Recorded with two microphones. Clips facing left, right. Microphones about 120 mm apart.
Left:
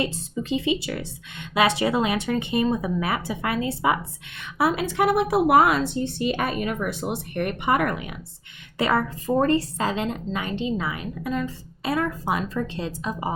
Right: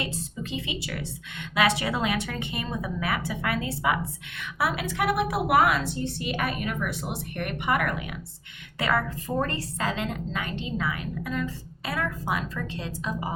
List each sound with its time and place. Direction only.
0.5 s a woman's voice: 25° left (ahead or behind)